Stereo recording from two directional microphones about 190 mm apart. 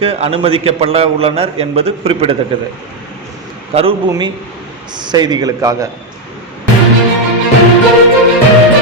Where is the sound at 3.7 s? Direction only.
30° right (ahead or behind).